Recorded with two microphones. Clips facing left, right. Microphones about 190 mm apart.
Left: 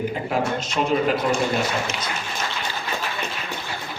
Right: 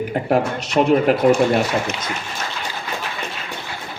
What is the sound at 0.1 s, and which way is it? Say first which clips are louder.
A man's voice: right 5 dB; 65° right (ahead or behind).